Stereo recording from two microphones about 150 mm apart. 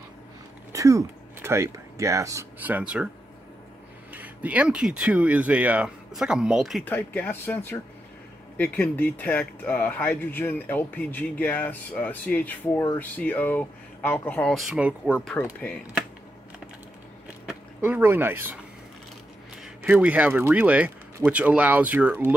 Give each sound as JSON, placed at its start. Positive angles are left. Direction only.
{"t": 0.7, "sound": "speech", "side_deg": -20}
{"t": 4.1, "sound": "speech", "side_deg": -10}
{"t": 6.8, "sound": "speech", "side_deg": 10}
{"t": 17.5, "sound": "speech", "side_deg": -10}